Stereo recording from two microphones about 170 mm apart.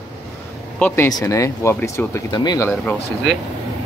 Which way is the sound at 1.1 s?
20° left (ahead or behind).